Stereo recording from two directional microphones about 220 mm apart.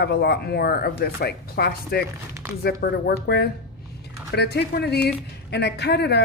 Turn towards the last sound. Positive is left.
turn(degrees=50)  # may be behind; listen again after turning